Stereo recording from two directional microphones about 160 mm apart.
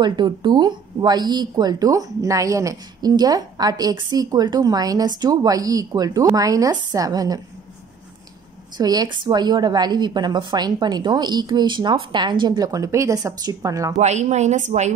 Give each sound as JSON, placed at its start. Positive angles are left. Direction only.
{"t": 0.0, "sound": "speech", "side_deg": -30}
{"t": 8.7, "sound": "speech", "side_deg": -25}
{"t": 13.9, "sound": "a woman's voice", "side_deg": -45}